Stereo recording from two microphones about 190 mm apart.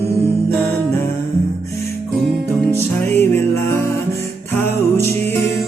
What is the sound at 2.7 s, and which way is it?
Music, 10° left (ahead or behind).